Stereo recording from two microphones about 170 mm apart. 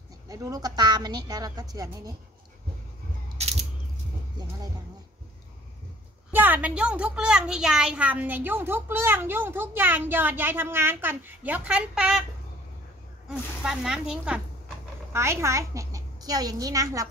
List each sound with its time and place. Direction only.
0.3 s a woman's voice: 20° right (ahead or behind)
3.4 s a sound: 40° right (ahead or behind)
6.3 s a woman's voice: 10° right (ahead or behind)
13.6 s speech: 5° right (ahead or behind)
15.1 s a child's voice: 15° right (ahead or behind)